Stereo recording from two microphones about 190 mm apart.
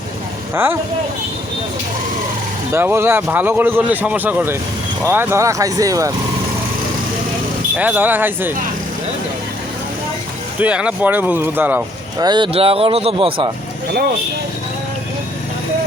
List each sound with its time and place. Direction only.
0.5 s speech: 10° right (ahead or behind)
2.7 s speech: 15° right (ahead or behind)
7.8 s speech: 10° right (ahead or behind)
10.6 s speech: 5° right (ahead or behind)
12.2 s speech: 25° right (ahead or behind)